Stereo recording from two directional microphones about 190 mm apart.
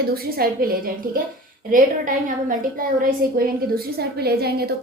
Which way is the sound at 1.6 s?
45° right (ahead or behind).